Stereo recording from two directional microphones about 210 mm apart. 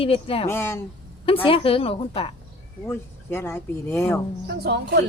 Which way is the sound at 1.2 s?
25° left (ahead or behind).